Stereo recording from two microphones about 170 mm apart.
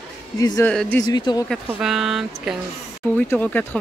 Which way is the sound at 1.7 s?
5° right (ahead or behind).